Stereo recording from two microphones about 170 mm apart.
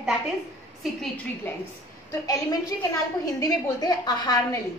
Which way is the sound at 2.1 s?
20° left (ahead or behind).